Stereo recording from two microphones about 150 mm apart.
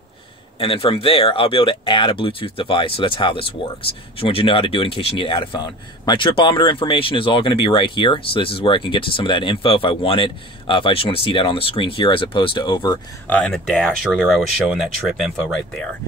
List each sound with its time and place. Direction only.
0.6 s speech: 40° left (ahead or behind)
13.3 s speech: 5° left (ahead or behind)